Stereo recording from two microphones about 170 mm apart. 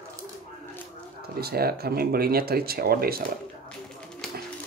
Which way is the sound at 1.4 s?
65° right (ahead or behind).